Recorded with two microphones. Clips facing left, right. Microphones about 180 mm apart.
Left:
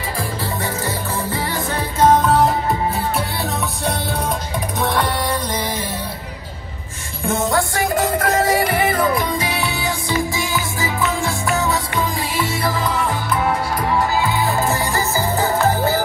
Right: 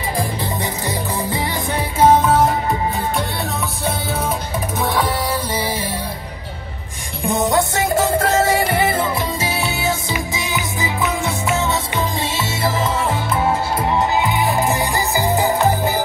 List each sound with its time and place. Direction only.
0.2 s music: 15° right (ahead or behind)
4.7 s music: centre (ahead or behind)
7.2 s music: 15° right (ahead or behind)